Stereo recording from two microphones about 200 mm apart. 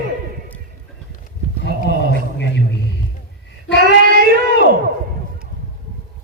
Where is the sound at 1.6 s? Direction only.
60° left (ahead or behind).